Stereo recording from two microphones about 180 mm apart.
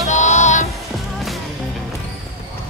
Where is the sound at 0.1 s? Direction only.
40° left (ahead or behind).